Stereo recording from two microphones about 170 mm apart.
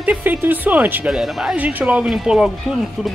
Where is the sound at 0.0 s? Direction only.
10° right (ahead or behind).